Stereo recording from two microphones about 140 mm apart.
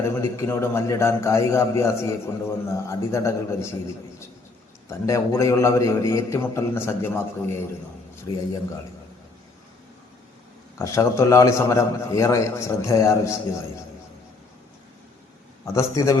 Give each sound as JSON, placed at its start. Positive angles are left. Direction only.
{"t": 0.0, "sound": "a man's voice", "side_deg": 20}
{"t": 4.9, "sound": "a man's voice", "side_deg": 20}
{"t": 10.8, "sound": "a man's voice", "side_deg": 20}
{"t": 15.6, "sound": "a man's voice", "side_deg": 20}